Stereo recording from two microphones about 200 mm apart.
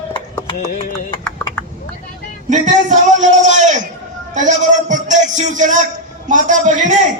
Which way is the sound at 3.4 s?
35° right (ahead or behind).